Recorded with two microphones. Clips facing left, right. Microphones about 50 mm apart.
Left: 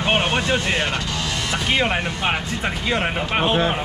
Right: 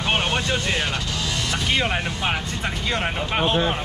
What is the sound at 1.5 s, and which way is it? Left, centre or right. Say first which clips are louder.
Speech: left 3 dB; centre.